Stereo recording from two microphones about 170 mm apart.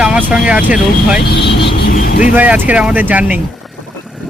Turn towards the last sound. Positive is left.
turn(degrees=-10)  # may be behind; listen again after turning